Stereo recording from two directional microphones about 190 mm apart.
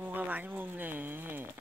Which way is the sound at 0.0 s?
10° right (ahead or behind).